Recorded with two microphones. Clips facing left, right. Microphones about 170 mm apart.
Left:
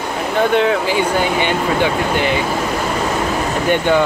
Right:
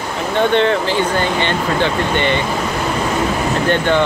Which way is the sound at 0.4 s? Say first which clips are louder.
Even; 5° left (ahead or behind).